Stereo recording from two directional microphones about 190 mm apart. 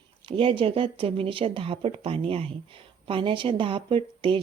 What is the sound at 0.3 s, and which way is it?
Speech, 25° right (ahead or behind).